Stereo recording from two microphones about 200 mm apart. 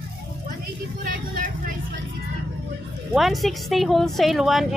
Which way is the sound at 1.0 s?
45° right (ahead or behind).